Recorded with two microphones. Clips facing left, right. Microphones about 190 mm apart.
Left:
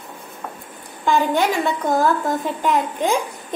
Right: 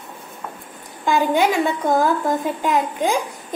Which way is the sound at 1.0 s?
10° right (ahead or behind).